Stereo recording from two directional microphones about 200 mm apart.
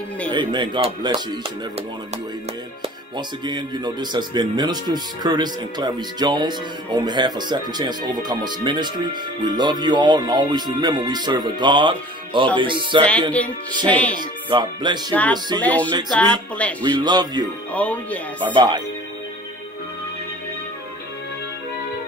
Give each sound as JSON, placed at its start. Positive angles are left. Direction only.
{"t": 0.3, "sound": "speech", "side_deg": -25}
{"t": 2.8, "sound": "speech", "side_deg": -20}
{"t": 13.8, "sound": "speech", "side_deg": 5}
{"t": 14.1, "sound": "speech", "side_deg": -20}
{"t": 15.6, "sound": "speech", "side_deg": 5}
{"t": 16.8, "sound": "speech", "side_deg": -20}
{"t": 17.7, "sound": "speech", "side_deg": 5}
{"t": 18.4, "sound": "speech", "side_deg": -25}